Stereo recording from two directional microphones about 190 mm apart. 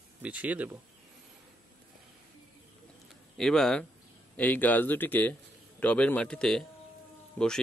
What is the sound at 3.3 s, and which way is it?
A man's voice, 5° left (ahead or behind).